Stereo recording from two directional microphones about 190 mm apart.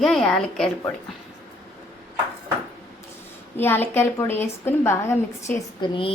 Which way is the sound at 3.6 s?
10° left (ahead or behind).